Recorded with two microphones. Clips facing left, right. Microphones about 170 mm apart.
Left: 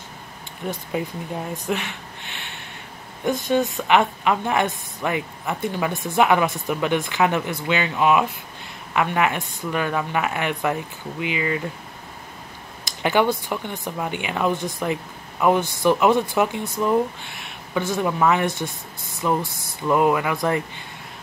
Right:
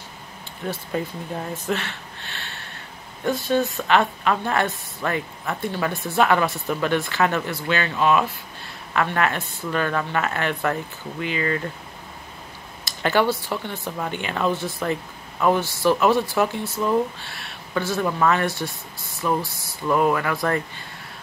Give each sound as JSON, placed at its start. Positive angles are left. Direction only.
{"t": 0.7, "sound": "speech", "side_deg": 10}
{"t": 12.8, "sound": "speech", "side_deg": 15}